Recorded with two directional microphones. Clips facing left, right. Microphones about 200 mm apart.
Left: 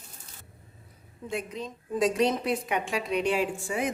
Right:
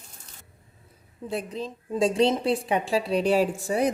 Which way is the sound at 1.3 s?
35° right (ahead or behind).